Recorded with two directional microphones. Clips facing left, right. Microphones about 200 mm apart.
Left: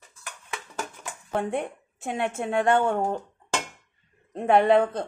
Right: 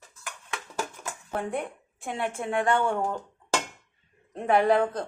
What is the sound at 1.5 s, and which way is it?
A woman's voice, 25° left (ahead or behind).